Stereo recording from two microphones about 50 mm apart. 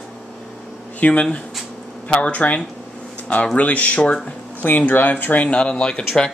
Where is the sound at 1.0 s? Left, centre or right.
Left.